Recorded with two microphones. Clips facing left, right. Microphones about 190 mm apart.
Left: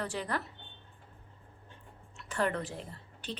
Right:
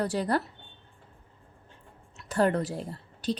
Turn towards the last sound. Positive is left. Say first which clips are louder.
# right 11 dB
turn(degrees=-40)  # may be behind; listen again after turning